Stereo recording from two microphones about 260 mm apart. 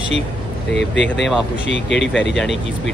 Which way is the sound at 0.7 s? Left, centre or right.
Left.